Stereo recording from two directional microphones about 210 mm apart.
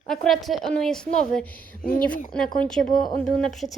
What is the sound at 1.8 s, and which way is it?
Speech, 45° left (ahead or behind).